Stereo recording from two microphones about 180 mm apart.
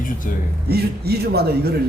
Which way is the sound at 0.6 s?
65° right (ahead or behind).